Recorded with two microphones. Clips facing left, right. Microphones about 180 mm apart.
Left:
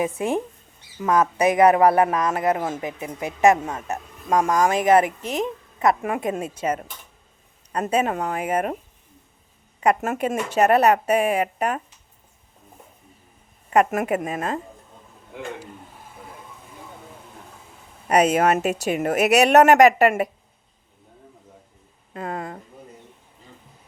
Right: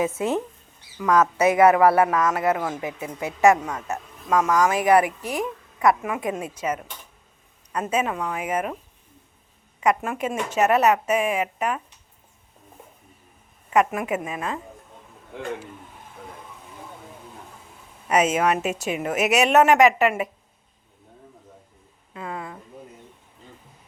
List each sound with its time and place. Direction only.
0.0 s speech: 15° left (ahead or behind)
0.9 s a man's voice: 30° left (ahead or behind)
1.4 s a man's voice: 15° left (ahead or behind)
4.3 s a woman's voice: 30° left (ahead or behind)
4.7 s a man's voice: 20° left (ahead or behind)
6.0 s a woman's voice: 50° left (ahead or behind)
6.2 s a man's voice: 25° left (ahead or behind)
9.8 s a woman's voice: 40° left (ahead or behind)
13.7 s a woman's voice: 45° left (ahead or behind)
18.1 s a woman's voice: 35° left (ahead or behind)
22.1 s a sound: 45° left (ahead or behind)